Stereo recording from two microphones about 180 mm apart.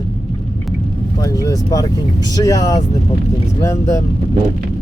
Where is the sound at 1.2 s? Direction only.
20° left (ahead or behind).